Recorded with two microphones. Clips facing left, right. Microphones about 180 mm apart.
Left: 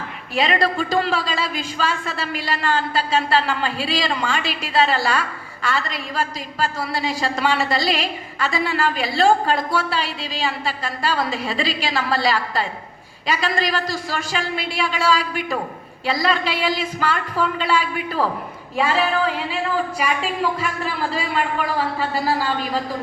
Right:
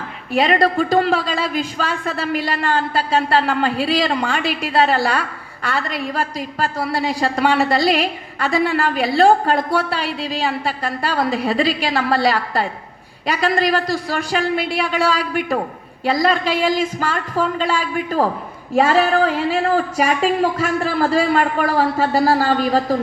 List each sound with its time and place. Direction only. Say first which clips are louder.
0.3 s a woman's voice: right 4 dB; 55° right (ahead or behind)